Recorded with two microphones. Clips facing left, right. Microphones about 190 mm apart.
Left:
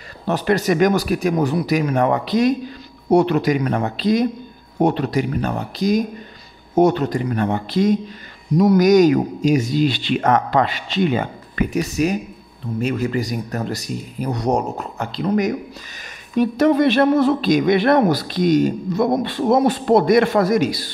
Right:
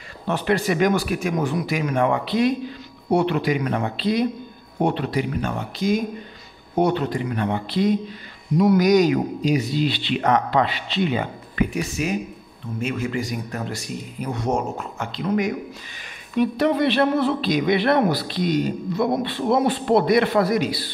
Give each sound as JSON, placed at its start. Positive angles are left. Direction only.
{"t": 0.3, "sound": "speech", "side_deg": 40}